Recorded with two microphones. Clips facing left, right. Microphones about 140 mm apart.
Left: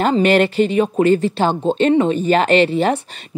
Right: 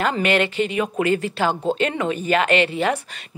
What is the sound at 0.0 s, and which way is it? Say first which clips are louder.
Speech: left 6 dB; 35° left (ahead or behind).